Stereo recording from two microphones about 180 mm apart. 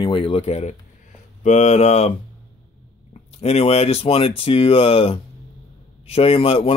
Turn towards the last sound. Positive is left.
turn(degrees=35)  # may be behind; listen again after turning